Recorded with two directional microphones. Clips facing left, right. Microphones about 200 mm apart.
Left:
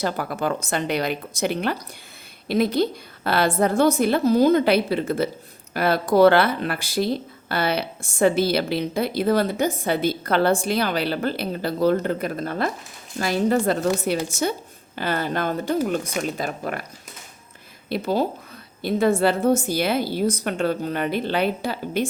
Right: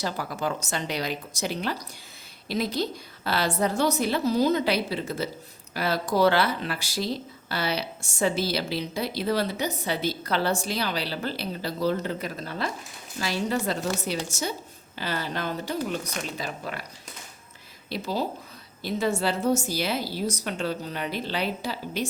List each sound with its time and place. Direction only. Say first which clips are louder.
0.0 s speech: left 5 dB; 55° left (ahead or behind)
14.9 s speech: left 6 dB; 55° left (ahead or behind)
17.8 s speech: left 6 dB; 55° left (ahead or behind)